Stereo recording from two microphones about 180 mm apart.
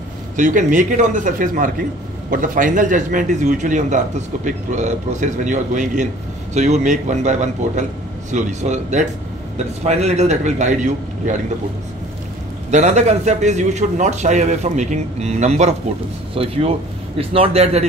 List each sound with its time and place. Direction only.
0.4 s a man's voice: 45° right (ahead or behind)
12.7 s a man's voice: 40° right (ahead or behind)